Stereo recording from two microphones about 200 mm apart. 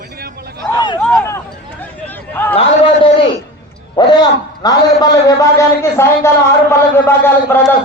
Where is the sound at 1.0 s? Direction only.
5° left (ahead or behind).